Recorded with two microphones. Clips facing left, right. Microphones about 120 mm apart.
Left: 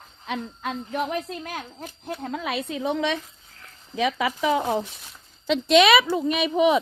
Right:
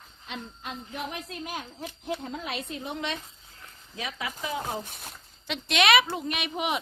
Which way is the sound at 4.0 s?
90° left.